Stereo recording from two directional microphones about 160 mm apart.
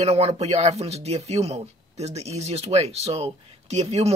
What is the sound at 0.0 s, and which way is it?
Speech, 40° right (ahead or behind).